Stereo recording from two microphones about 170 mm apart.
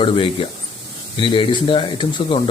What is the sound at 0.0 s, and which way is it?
Speech, 30° left (ahead or behind).